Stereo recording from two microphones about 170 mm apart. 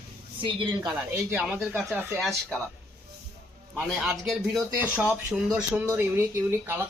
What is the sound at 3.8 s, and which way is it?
Speech, 5° right (ahead or behind).